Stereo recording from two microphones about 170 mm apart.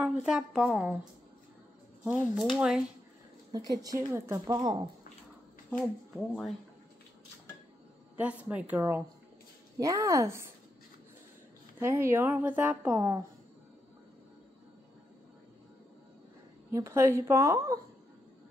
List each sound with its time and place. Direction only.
0.0 s speech: 5° right (ahead or behind)
2.0 s speech: centre (ahead or behind)
3.5 s a woman's voice: 20° right (ahead or behind)
5.7 s speech: 5° left (ahead or behind)
8.2 s a woman's voice: 10° right (ahead or behind)
11.8 s a woman's voice: 15° right (ahead or behind)
16.7 s a woman's voice: 15° right (ahead or behind)